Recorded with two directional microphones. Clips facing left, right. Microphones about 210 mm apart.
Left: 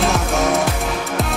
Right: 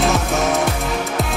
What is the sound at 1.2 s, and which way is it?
Music, centre (ahead or behind).